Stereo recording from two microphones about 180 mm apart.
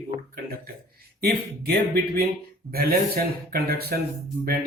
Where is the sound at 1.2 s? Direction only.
60° right (ahead or behind).